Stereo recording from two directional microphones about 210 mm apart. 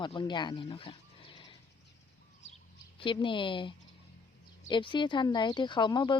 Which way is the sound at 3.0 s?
25° left (ahead or behind).